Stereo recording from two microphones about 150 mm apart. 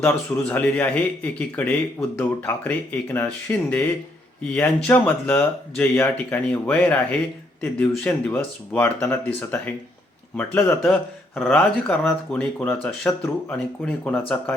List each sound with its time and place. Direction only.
0.0 s speech: 10° left (ahead or behind)
11.3 s speech: centre (ahead or behind)